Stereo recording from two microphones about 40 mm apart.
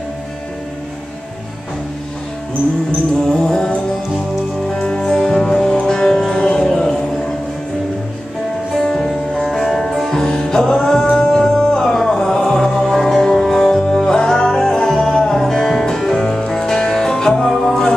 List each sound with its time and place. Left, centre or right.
3.3 s music: centre
4.8 s music: left
5.6 s music: centre
8.9 s music: centre
10.1 s music: centre